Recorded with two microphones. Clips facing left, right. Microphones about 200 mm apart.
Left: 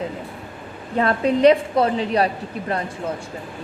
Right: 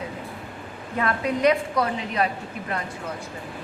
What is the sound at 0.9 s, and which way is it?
A woman's voice, 30° left (ahead or behind).